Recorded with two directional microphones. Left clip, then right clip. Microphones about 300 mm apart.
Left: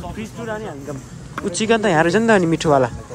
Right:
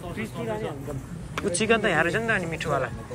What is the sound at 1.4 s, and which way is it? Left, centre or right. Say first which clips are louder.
Speech: left 5 dB; centre.